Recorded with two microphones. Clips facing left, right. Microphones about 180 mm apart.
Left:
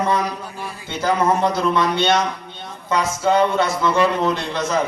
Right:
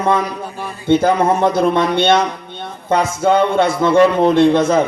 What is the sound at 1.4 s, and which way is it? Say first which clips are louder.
Speech: right 5 dB; 50° right (ahead or behind).